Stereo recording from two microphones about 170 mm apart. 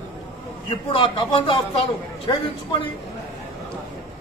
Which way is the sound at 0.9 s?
30° left (ahead or behind).